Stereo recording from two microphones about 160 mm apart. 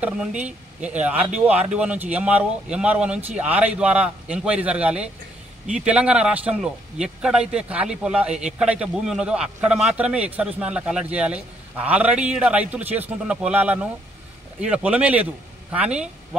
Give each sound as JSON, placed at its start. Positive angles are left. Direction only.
{"t": 0.0, "sound": "a man's voice", "side_deg": -5}